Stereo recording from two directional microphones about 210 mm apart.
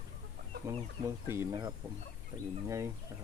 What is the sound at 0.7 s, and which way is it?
Speech, 15° right (ahead or behind).